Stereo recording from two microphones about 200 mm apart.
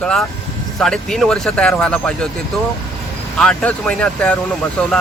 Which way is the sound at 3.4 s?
5° left (ahead or behind).